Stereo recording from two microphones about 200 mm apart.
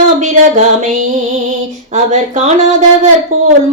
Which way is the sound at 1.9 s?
35° right (ahead or behind).